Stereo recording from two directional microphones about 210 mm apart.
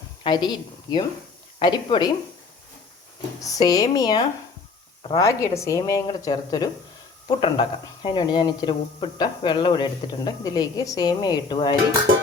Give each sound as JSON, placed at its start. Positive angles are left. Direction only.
{"t": 0.2, "sound": "a woman's voice", "side_deg": 20}
{"t": 3.4, "sound": "a woman's voice", "side_deg": 15}